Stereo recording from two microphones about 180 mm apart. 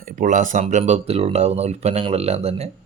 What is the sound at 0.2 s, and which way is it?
Speech, 45° right (ahead or behind).